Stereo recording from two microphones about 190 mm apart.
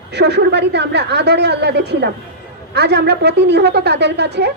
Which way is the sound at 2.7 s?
60° right (ahead or behind).